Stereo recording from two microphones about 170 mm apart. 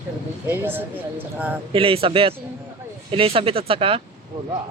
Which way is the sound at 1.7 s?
30° right (ahead or behind).